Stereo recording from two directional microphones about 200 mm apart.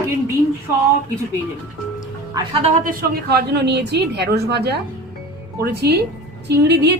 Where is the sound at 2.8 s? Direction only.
50° right (ahead or behind).